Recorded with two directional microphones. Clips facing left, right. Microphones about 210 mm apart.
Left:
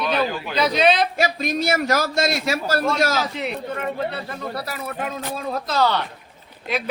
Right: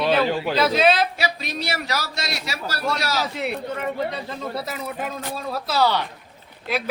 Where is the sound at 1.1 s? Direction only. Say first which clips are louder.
Left 5 dB; 45° left (ahead or behind).